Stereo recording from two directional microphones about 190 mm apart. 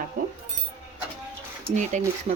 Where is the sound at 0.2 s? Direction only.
45° right (ahead or behind).